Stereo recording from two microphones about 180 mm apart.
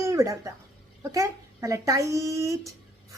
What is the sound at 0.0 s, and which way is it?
A woman's voice, 15° right (ahead or behind).